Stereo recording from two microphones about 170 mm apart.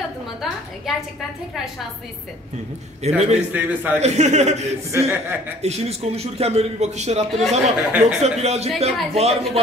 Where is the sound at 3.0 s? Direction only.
40° right (ahead or behind).